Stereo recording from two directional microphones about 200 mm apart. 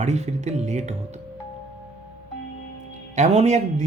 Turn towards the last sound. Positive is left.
turn(degrees=-35)  # may be behind; listen again after turning